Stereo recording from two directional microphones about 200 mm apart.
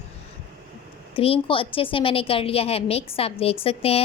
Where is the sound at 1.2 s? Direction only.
25° left (ahead or behind).